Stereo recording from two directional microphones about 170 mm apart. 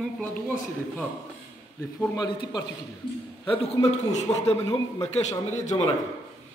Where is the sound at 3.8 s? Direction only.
40° left (ahead or behind).